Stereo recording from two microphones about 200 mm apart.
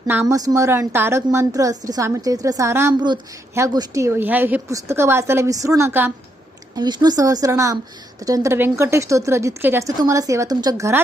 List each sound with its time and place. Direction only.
0.1 s a woman's voice: 15° right (ahead or behind)